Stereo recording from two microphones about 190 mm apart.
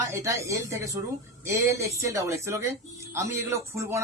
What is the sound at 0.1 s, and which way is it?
Speech, 15° right (ahead or behind).